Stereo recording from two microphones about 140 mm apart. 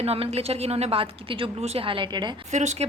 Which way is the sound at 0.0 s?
45° right (ahead or behind).